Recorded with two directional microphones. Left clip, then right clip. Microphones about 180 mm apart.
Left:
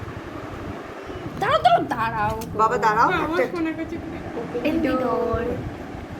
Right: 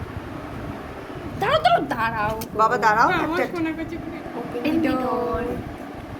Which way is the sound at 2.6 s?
55° right (ahead or behind).